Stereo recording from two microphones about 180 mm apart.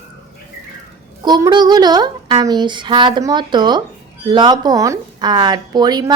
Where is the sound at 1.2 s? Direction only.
25° right (ahead or behind).